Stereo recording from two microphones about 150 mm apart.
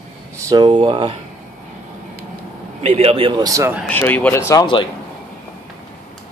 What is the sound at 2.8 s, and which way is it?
Speech, 45° right (ahead or behind).